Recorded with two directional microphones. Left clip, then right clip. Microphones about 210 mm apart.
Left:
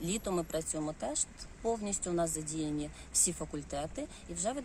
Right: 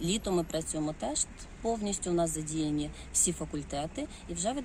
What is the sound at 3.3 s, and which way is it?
Speech, 10° left (ahead or behind).